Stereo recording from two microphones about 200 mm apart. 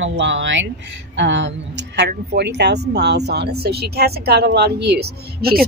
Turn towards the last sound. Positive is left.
turn(degrees=-50)  # may be behind; listen again after turning